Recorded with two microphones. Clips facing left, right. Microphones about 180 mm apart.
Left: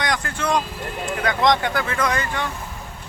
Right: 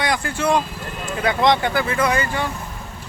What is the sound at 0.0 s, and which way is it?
Speech, 10° right (ahead or behind).